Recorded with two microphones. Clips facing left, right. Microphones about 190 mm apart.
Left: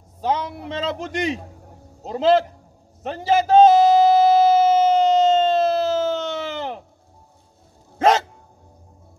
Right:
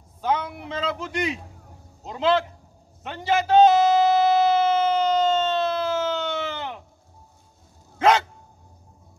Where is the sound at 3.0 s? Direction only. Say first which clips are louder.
Left 4 dB; 40° left (ahead or behind).